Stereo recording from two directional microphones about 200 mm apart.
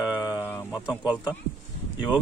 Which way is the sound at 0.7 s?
5° right (ahead or behind).